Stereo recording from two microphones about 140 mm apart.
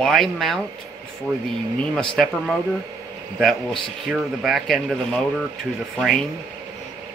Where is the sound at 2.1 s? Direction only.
Centre (ahead or behind).